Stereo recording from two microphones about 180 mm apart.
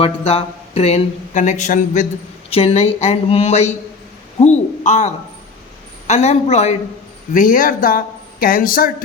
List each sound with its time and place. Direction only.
0.0 s speech: 35° left (ahead or behind)
4.4 s a sound: 40° left (ahead or behind)
6.1 s speech: 35° left (ahead or behind)
7.3 s speech: 50° left (ahead or behind)